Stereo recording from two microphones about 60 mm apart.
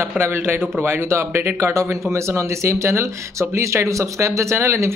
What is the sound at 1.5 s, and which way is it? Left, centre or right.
Speech, right.